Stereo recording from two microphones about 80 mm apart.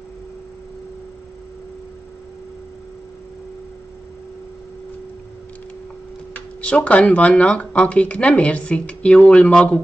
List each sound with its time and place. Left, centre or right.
6.3 s speech: centre